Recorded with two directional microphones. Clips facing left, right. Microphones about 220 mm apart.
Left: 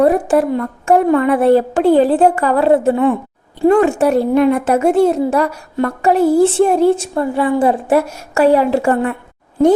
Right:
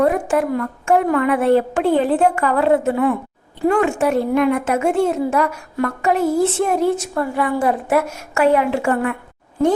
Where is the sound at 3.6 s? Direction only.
35° left (ahead or behind).